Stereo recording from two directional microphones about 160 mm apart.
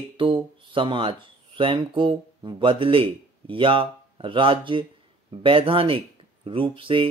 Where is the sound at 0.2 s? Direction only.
35° right (ahead or behind).